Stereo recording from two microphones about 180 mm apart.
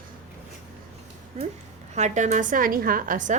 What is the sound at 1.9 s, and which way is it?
A woman's voice, 40° right (ahead or behind).